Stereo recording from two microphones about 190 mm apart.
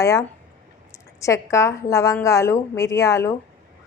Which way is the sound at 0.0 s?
15° left (ahead or behind).